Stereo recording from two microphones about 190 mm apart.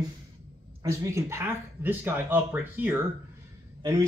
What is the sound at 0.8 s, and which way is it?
Speech, 15° right (ahead or behind).